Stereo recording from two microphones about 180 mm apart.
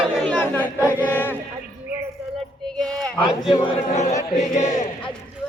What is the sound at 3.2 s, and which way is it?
Speech, 30° left (ahead or behind).